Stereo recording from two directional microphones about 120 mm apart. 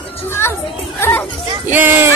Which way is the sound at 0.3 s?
20° left (ahead or behind).